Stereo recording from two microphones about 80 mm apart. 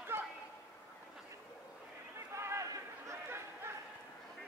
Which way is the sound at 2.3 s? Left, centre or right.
Right.